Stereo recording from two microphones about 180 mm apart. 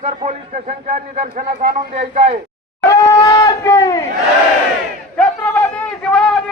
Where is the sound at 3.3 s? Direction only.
20° left (ahead or behind).